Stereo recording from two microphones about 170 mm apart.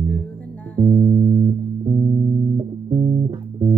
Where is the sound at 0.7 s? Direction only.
55° right (ahead or behind).